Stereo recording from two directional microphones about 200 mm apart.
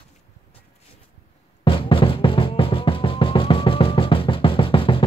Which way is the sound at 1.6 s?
25° left (ahead or behind).